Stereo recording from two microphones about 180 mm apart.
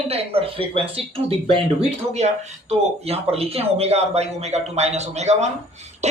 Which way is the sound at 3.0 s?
35° right (ahead or behind).